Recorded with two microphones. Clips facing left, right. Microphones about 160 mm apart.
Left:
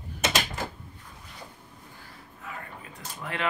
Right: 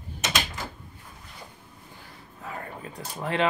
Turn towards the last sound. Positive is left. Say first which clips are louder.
# right 7 dB
turn(degrees=-30)  # may be behind; listen again after turning